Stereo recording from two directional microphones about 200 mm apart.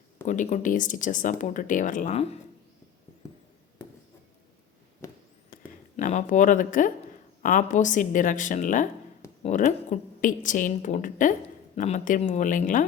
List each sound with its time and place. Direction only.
0.3 s speech: 35° left (ahead or behind)
5.5 s a sound: 40° left (ahead or behind)
6.0 s speech: 35° left (ahead or behind)